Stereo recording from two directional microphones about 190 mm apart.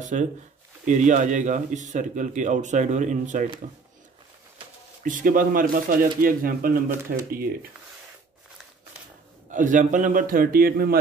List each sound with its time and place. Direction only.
0.1 s speech: 45° right (ahead or behind)
5.0 s speech: 45° right (ahead or behind)
9.5 s speech: 40° right (ahead or behind)